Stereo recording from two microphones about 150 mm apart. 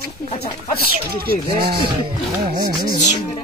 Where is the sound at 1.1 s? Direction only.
90° right.